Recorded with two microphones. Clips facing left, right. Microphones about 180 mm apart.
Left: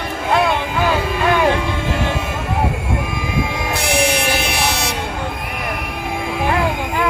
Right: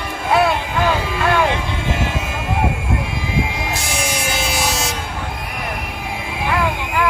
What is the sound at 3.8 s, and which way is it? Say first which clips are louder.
Vehicle: left 6 dB; 60° left (ahead or behind).